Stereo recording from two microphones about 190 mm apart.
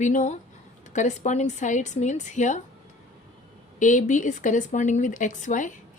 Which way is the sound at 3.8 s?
40° left (ahead or behind).